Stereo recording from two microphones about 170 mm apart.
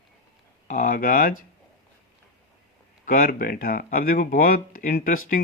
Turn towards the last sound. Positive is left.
turn(degrees=55)  # may be behind; listen again after turning